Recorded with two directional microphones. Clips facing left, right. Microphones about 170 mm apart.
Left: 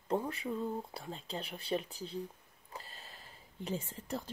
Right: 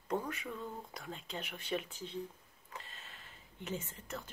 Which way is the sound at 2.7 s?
35° left (ahead or behind).